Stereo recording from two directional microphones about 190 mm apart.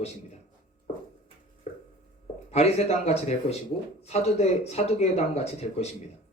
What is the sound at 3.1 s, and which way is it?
Speech, 35° left (ahead or behind).